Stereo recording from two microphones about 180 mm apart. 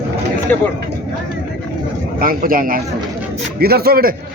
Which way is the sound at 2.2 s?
50° right (ahead or behind).